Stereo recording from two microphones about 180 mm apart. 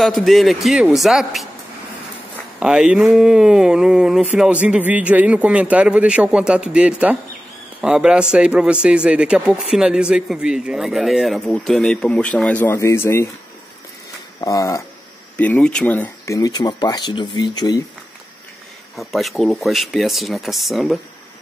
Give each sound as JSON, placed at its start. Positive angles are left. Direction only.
{"t": 0.0, "sound": "a man's voice", "side_deg": 0}
{"t": 2.6, "sound": "a man's voice", "side_deg": -5}
{"t": 14.4, "sound": "a sound", "side_deg": 15}
{"t": 15.3, "sound": "speech", "side_deg": 5}
{"t": 18.9, "sound": "a man's voice", "side_deg": 0}